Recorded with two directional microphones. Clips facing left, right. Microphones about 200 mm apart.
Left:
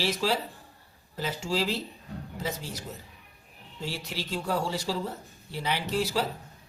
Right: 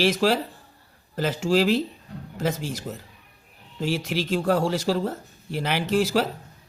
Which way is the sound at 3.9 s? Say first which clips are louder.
Right 10 dB; 90° right.